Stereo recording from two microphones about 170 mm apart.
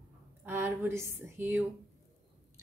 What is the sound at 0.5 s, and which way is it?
Speech, 15° right (ahead or behind).